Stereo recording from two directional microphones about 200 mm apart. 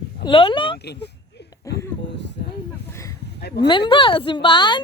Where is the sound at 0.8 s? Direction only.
55° left (ahead or behind).